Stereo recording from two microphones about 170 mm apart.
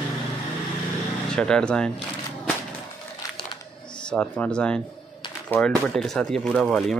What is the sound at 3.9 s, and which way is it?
Speech, 5° left (ahead or behind).